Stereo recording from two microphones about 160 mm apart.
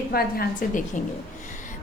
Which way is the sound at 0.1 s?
70° left (ahead or behind).